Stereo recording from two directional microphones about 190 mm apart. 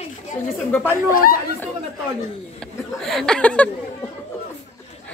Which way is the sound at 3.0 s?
Centre (ahead or behind).